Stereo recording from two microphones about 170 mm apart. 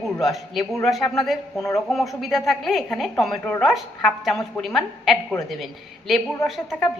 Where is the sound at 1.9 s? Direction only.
Centre (ahead or behind).